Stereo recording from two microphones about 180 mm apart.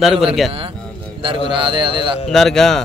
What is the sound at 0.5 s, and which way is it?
A man's voice, 30° right (ahead or behind).